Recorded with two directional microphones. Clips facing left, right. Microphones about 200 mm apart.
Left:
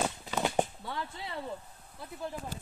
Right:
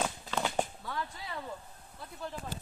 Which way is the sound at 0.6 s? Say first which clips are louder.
Left 2 dB; 25° left (ahead or behind).